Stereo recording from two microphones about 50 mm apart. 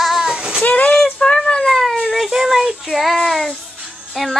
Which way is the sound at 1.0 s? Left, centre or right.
Centre.